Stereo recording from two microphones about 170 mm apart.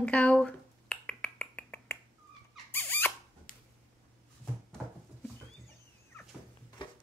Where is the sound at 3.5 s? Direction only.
55° left (ahead or behind).